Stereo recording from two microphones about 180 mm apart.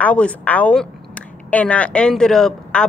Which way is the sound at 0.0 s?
5° left (ahead or behind).